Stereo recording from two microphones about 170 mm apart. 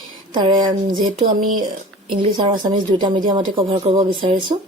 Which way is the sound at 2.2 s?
30° right (ahead or behind).